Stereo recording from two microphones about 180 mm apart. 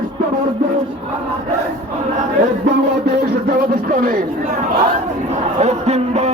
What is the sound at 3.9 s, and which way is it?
Speech, 50° right (ahead or behind).